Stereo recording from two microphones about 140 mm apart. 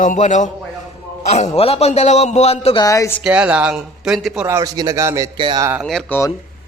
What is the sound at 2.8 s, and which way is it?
Speech, 25° left (ahead or behind).